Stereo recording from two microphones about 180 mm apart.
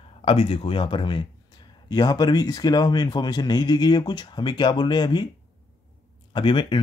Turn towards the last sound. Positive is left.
turn(degrees=25)  # may be behind; listen again after turning